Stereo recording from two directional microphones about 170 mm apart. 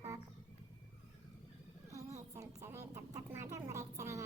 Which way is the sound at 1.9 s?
20° right (ahead or behind).